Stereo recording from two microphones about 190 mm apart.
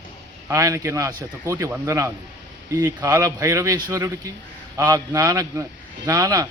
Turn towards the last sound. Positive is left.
turn(degrees=-20)  # may be behind; listen again after turning